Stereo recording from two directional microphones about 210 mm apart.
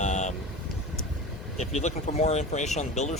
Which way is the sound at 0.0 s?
35° left (ahead or behind).